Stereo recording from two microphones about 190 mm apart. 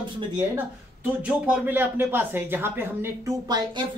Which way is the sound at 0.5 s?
10° right (ahead or behind).